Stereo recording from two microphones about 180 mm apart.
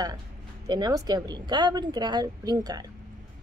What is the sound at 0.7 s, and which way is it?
A woman's voice, 20° right (ahead or behind).